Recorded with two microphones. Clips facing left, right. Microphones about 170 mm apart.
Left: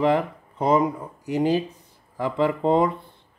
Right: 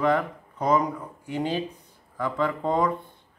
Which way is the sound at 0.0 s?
25° left (ahead or behind).